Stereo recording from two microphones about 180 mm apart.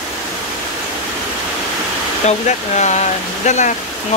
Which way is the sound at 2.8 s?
40° left (ahead or behind).